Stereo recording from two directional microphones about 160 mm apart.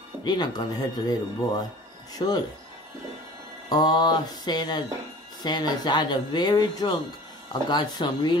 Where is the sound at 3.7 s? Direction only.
25° left (ahead or behind).